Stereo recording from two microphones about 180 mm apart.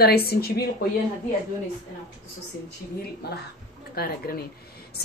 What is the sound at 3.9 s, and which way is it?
Speech, 55° left (ahead or behind).